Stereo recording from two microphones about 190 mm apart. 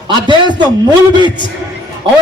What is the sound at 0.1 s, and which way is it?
Speech, 25° right (ahead or behind).